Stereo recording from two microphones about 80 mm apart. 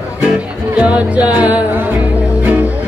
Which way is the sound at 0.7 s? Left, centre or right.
Centre.